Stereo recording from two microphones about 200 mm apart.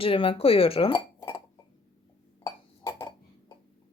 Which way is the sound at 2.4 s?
15° left (ahead or behind).